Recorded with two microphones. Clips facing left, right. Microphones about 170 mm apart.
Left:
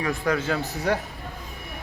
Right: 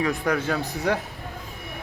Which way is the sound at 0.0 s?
15° right (ahead or behind).